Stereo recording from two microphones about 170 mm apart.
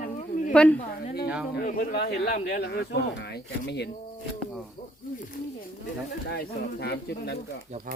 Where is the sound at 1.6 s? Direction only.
55° left (ahead or behind); by 3.9 s 80° left.